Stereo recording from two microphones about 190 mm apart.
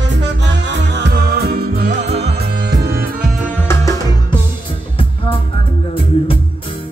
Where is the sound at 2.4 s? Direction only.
60° right (ahead or behind).